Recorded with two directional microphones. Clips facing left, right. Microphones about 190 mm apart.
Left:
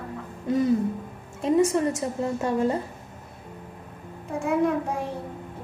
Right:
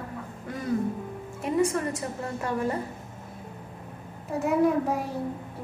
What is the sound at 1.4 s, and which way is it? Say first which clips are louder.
A woman's voice: left 4 dB; 25° left (ahead or behind).